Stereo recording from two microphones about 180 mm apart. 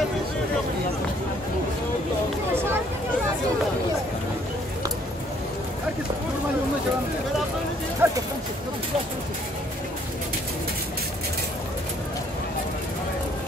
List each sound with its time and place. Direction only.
8.0 s speech: 10° right (ahead or behind)